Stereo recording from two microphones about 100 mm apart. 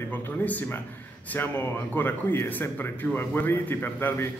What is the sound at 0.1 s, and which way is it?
A man's voice, 15° left (ahead or behind).